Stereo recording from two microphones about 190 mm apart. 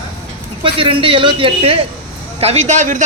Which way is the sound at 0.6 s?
25° right (ahead or behind).